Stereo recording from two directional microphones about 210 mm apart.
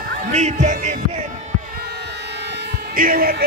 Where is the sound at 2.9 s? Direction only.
45° right (ahead or behind).